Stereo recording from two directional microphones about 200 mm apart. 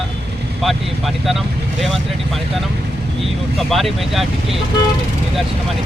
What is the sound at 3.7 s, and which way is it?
Speech, centre (ahead or behind).